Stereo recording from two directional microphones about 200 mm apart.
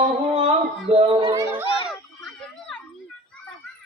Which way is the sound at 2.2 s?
5° left (ahead or behind).